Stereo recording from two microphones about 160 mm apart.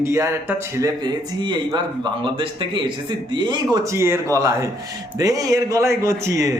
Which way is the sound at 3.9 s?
15° right (ahead or behind).